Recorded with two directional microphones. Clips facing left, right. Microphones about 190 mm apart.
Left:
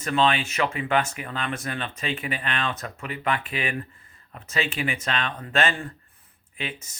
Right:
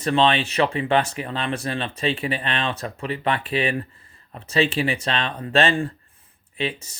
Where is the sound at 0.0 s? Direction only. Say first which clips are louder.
Right 3 dB; 30° right (ahead or behind).